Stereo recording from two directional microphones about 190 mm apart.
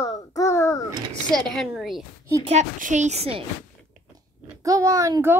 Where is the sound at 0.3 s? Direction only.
15° left (ahead or behind).